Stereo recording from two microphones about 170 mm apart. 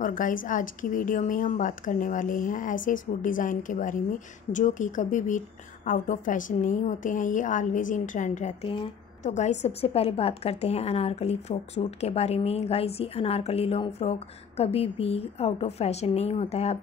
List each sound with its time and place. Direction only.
0.0 s a woman's voice: 50° left (ahead or behind)